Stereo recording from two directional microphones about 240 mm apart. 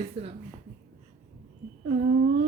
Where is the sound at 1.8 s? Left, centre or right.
Right.